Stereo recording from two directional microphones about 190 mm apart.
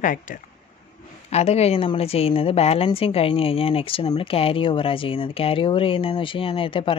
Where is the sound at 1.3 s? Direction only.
35° left (ahead or behind).